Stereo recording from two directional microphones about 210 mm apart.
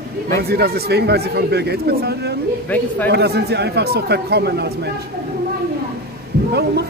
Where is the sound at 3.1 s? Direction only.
50° right (ahead or behind).